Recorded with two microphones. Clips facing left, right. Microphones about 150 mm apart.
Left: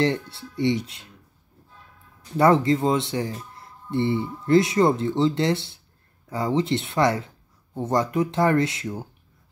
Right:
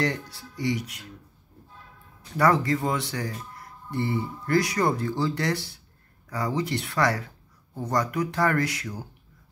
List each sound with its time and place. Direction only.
0.0 s speech: 25° left (ahead or behind)
2.3 s speech: 25° left (ahead or behind)